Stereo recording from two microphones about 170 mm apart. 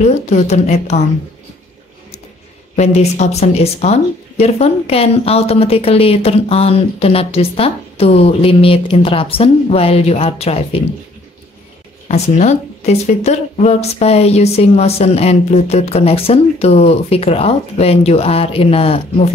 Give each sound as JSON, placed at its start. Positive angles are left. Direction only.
{"t": 0.0, "sound": "a woman's voice", "side_deg": 40}
{"t": 2.7, "sound": "a woman's voice", "side_deg": 40}
{"t": 12.1, "sound": "a woman's voice", "side_deg": 40}